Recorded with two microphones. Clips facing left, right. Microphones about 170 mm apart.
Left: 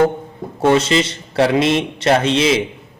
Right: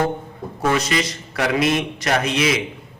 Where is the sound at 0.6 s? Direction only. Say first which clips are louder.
Left 6 dB; 30° left (ahead or behind).